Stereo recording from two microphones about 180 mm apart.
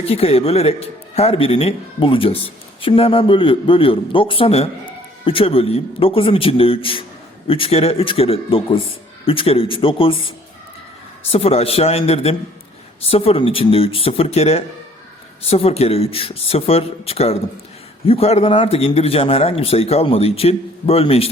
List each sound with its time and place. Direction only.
0.0 s a man's voice: 35° left (ahead or behind)